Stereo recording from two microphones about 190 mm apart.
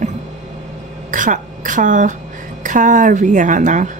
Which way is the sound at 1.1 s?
45° right (ahead or behind).